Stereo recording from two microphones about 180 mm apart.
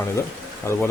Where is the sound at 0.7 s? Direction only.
15° left (ahead or behind).